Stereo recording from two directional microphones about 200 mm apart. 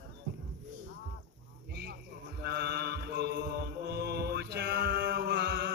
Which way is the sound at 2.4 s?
55° right (ahead or behind).